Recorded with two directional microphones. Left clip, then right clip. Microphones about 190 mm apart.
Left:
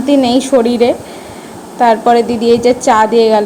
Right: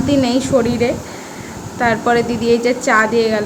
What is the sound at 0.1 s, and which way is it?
A woman's voice, 20° left (ahead or behind).